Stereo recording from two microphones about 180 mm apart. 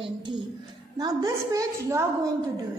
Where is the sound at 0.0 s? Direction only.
25° right (ahead or behind).